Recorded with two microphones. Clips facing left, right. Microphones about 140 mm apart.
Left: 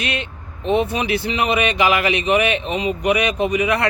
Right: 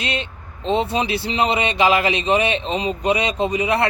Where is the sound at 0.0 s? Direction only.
25° right (ahead or behind).